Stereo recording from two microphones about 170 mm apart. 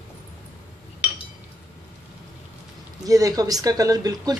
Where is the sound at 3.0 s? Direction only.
20° right (ahead or behind).